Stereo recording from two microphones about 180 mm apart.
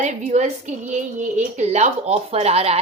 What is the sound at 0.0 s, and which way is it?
A woman's voice, 40° right (ahead or behind).